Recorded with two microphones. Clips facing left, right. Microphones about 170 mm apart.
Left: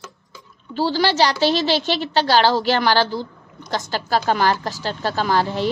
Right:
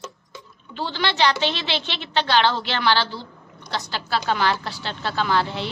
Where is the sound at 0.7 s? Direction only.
40° left (ahead or behind).